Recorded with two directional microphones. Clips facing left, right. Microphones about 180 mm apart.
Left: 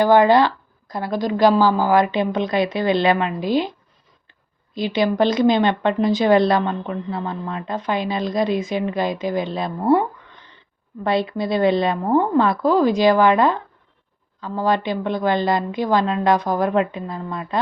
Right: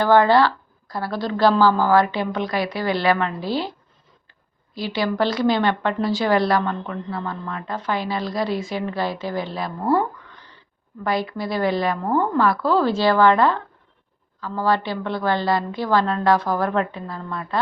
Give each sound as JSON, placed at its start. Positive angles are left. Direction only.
{"t": 0.0, "sound": "a woman's voice", "side_deg": 15}